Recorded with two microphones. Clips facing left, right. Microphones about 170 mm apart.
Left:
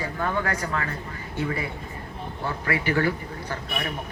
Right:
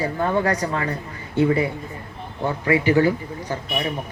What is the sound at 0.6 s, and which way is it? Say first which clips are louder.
A man's voice: right 5 dB; 25° right (ahead or behind).